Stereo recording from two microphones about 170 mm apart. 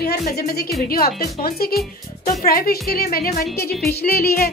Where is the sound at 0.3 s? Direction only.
65° left (ahead or behind).